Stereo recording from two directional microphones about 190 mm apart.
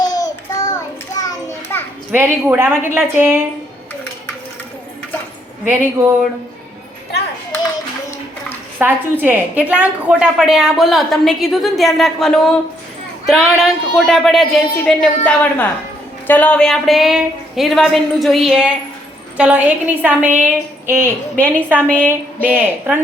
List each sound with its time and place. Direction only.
0.0 s a sound: 20° left (ahead or behind)
2.1 s a woman's voice: 10° right (ahead or behind)
5.6 s a woman's voice: 10° right (ahead or behind)
8.8 s a woman's voice: 10° right (ahead or behind)
21.8 s a woman's voice: 5° left (ahead or behind)
22.4 s a woman's voice: 10° right (ahead or behind)